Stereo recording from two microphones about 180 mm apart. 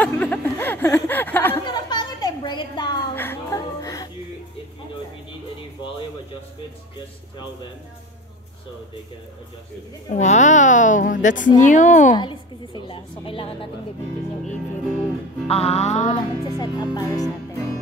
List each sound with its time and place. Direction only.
0.0 s a sound: 10° left (ahead or behind)
1.7 s a sound: 25° left (ahead or behind)
3.2 s music: 15° left (ahead or behind)
10.0 s a child's voice: 40° left (ahead or behind)
12.2 s music: 25° left (ahead or behind)
15.4 s music: 35° left (ahead or behind)
16.4 s speech: 20° left (ahead or behind)